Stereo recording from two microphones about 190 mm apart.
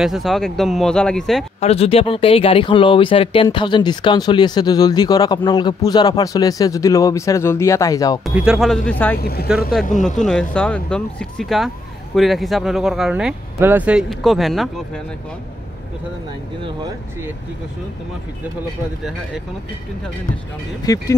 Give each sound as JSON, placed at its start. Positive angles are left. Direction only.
{"t": 0.0, "sound": "speech", "side_deg": 0}
{"t": 1.6, "sound": "speech", "side_deg": 30}
{"t": 8.4, "sound": "speech", "side_deg": 0}
{"t": 9.2, "sound": "speech", "side_deg": 55}
{"t": 10.2, "sound": "speech", "side_deg": 5}